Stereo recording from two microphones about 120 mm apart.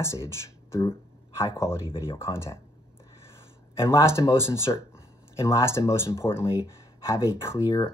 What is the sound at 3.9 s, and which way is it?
Speech, 25° left (ahead or behind).